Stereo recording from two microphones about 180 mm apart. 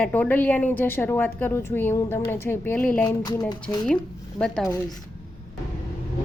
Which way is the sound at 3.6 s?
5° left (ahead or behind).